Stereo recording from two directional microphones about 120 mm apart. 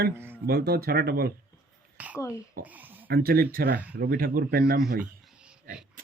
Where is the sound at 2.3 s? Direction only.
15° right (ahead or behind).